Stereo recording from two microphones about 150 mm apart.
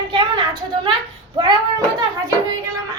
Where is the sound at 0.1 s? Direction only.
30° right (ahead or behind).